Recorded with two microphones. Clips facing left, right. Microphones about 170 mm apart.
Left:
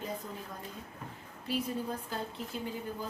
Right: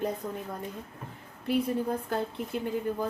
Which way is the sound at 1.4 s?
60° right (ahead or behind).